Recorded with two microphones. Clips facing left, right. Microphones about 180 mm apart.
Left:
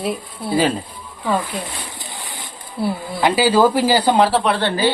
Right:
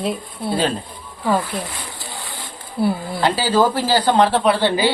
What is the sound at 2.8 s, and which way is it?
Speech, centre (ahead or behind).